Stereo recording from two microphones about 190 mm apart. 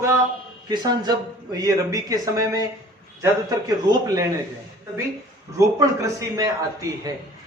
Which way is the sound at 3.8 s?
20° right (ahead or behind).